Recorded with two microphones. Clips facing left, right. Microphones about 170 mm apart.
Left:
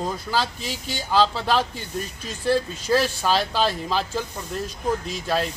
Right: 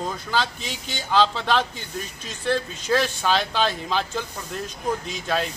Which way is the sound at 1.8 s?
45° left (ahead or behind).